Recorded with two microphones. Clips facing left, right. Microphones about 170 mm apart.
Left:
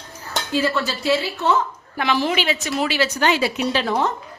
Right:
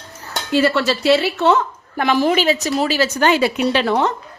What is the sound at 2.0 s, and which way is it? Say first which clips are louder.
A woman's voice: right 5 dB; 50° right (ahead or behind).